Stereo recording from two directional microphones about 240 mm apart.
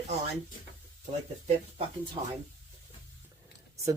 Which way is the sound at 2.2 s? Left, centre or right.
Centre.